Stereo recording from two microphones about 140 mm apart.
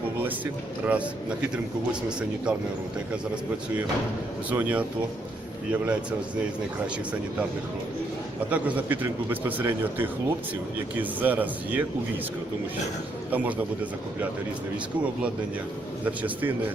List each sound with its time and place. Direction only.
0.9 s a man's voice: 10° right (ahead or behind)
4.5 s a man's voice: 10° right (ahead or behind)
8.4 s a man's voice: 10° right (ahead or behind)
13.3 s a man's voice: 10° right (ahead or behind)
16.2 s a man's voice: 15° right (ahead or behind)